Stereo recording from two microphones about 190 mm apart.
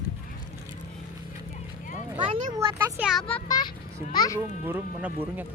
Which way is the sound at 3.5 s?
20° left (ahead or behind).